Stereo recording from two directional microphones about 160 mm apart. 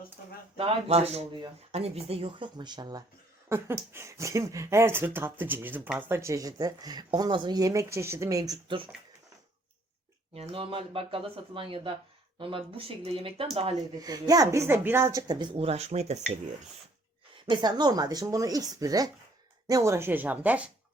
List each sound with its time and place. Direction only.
0.5 s speech: 35° right (ahead or behind)
3.5 s speech: 15° right (ahead or behind); by 8.9 s 30° right (ahead or behind)
10.3 s speech: 35° right (ahead or behind)
14.0 s speech: 25° right (ahead or behind); by 16.2 s 45° right (ahead or behind)
17.4 s speech: 30° right (ahead or behind); by 20.7 s 10° right (ahead or behind)